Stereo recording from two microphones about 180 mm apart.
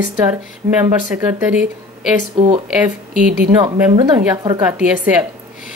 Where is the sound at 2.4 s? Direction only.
30° right (ahead or behind).